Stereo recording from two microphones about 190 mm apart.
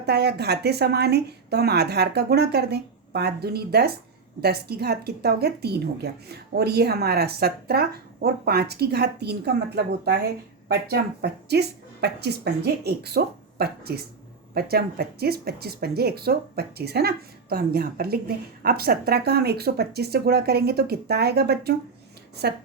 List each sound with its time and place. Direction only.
0.0 s speech: 60° right (ahead or behind)